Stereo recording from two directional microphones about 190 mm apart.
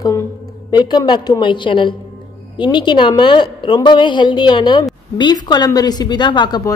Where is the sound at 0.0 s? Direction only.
20° left (ahead or behind).